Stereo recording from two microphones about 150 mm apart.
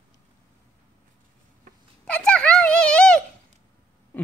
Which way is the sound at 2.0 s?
10° left (ahead or behind).